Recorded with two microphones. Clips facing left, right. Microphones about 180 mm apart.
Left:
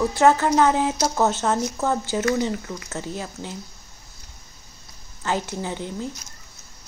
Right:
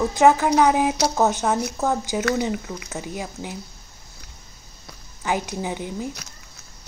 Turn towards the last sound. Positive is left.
turn(degrees=-15)  # may be behind; listen again after turning